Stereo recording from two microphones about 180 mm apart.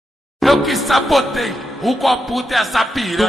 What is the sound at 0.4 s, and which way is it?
A man's voice, centre (ahead or behind).